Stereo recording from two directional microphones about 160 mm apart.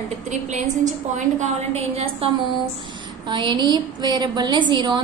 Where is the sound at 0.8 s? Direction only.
50° right (ahead or behind).